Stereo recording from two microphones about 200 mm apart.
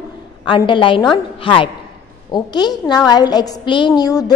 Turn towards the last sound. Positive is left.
turn(degrees=20)  # may be behind; listen again after turning